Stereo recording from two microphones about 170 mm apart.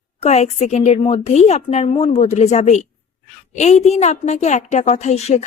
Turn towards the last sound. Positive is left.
turn(degrees=40)  # may be behind; listen again after turning